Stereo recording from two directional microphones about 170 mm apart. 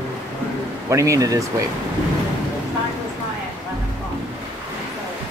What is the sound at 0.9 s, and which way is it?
Speech, 20° right (ahead or behind).